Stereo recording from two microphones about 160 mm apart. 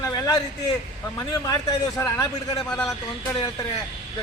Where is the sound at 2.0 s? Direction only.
15° left (ahead or behind).